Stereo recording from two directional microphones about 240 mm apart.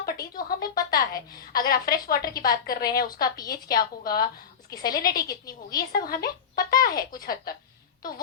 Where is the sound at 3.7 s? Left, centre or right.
Left.